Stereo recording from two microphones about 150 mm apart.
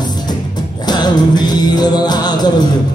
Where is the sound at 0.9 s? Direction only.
25° left (ahead or behind).